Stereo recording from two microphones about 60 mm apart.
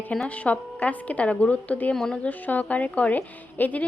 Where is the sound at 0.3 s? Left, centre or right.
Left.